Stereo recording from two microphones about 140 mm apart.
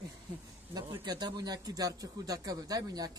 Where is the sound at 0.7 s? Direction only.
25° right (ahead or behind).